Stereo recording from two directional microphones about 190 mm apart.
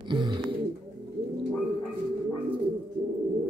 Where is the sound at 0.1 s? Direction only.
25° right (ahead or behind).